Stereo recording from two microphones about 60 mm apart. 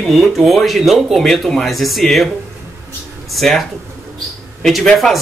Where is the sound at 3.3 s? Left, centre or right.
Centre.